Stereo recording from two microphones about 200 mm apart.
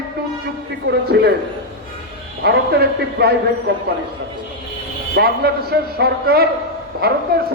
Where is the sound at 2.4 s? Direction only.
50° right (ahead or behind).